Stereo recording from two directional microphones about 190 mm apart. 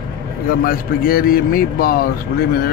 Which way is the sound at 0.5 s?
50° left (ahead or behind).